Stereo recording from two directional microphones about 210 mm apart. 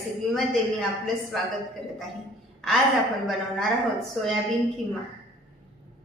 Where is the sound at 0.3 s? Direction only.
Centre (ahead or behind).